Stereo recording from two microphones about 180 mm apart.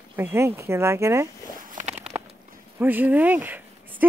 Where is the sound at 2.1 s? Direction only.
15° right (ahead or behind).